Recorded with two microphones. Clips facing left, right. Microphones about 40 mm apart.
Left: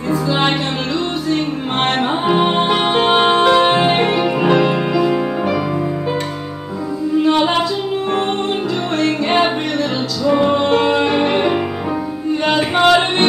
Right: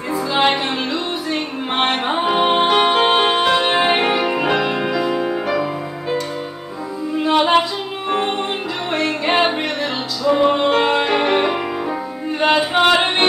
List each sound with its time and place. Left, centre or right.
0.5 s music: centre
7.2 s female singing: centre
8.9 s music: centre
11.1 s music: centre
12.8 s music: centre